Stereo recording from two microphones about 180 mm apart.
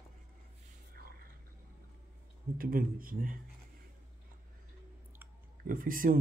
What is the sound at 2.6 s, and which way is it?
Speech, 55° right (ahead or behind).